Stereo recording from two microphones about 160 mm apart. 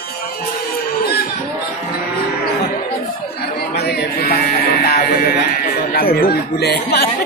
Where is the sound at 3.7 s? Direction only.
85° left.